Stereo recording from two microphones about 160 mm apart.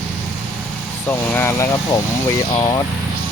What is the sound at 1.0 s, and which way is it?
Speech, 15° left (ahead or behind).